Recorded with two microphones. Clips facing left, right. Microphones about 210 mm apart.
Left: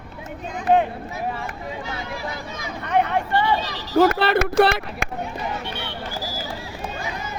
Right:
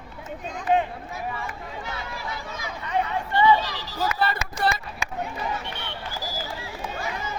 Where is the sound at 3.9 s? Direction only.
70° left (ahead or behind).